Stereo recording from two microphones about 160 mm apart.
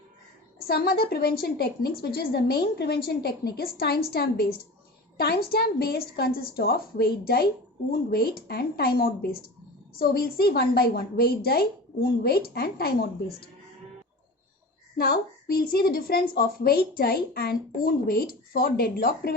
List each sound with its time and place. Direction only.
0.7 s a woman's voice: 75° left (ahead or behind)
14.9 s a woman's voice: 70° left (ahead or behind)